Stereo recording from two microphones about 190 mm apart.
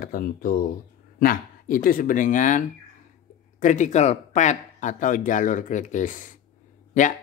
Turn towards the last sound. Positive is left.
turn(degrees=40)  # may be behind; listen again after turning